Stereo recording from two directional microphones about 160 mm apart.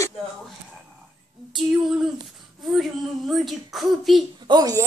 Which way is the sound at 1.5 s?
5° right (ahead or behind).